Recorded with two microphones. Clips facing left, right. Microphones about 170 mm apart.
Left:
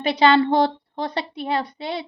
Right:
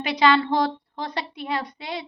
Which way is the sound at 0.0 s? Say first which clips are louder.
Left 3 dB; 30° left (ahead or behind).